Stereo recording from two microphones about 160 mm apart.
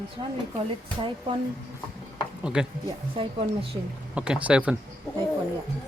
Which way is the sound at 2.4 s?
5° right (ahead or behind).